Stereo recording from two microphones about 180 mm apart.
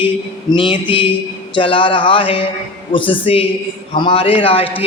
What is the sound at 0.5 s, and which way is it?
A man's voice, 25° left (ahead or behind).